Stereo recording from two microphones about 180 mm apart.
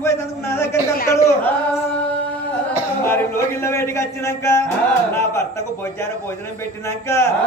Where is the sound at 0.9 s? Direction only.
55° left (ahead or behind).